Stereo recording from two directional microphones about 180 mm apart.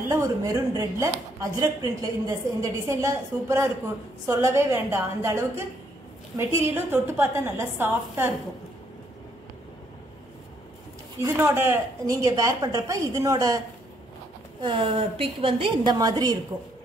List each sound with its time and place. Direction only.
0.1 s a woman's voice: 15° right (ahead or behind)
11.3 s a woman's voice: 10° right (ahead or behind)
14.6 s a woman's voice: 30° right (ahead or behind)